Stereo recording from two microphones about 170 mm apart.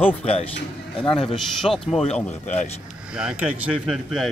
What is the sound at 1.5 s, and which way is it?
Speech, centre (ahead or behind).